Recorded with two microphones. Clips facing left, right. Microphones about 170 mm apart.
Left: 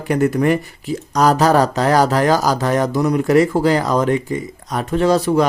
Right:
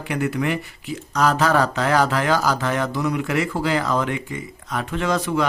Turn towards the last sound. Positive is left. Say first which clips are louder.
# left 7 dB
turn(degrees=35)  # may be behind; listen again after turning